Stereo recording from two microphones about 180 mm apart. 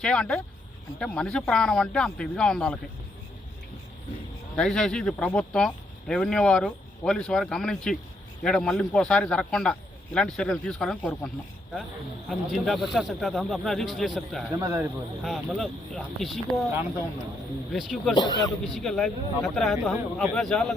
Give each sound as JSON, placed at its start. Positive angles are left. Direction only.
{"t": 0.0, "sound": "speech", "side_deg": 5}
{"t": 4.5, "sound": "speech", "side_deg": 5}
{"t": 12.3, "sound": "speech", "side_deg": 0}
{"t": 14.5, "sound": "speech", "side_deg": -15}
{"t": 15.2, "sound": "speech", "side_deg": 0}
{"t": 17.7, "sound": "speech", "side_deg": 0}
{"t": 18.1, "sound": "speech", "side_deg": 25}
{"t": 18.7, "sound": "speech", "side_deg": 0}